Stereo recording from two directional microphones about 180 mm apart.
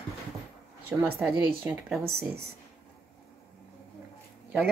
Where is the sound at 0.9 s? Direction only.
5° right (ahead or behind).